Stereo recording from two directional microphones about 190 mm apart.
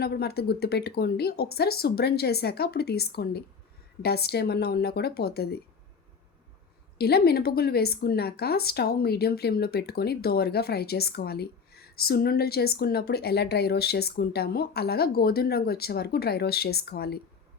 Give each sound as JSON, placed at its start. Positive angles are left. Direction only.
{"t": 0.0, "sound": "speech", "side_deg": 55}
{"t": 7.0, "sound": "speech", "side_deg": 55}